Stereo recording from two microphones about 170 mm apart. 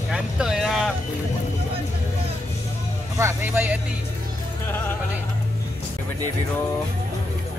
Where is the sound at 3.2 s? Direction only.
15° right (ahead or behind).